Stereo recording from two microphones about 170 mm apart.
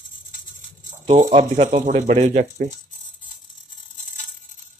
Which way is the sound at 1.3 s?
35° right (ahead or behind).